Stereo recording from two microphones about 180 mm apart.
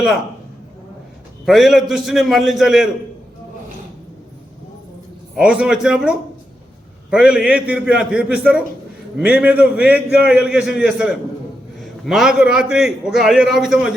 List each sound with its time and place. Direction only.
1.5 s a man's voice: centre (ahead or behind)
5.4 s a man's voice: 5° right (ahead or behind)